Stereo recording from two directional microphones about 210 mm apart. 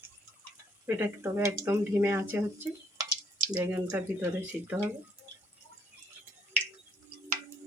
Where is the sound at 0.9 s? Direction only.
10° right (ahead or behind).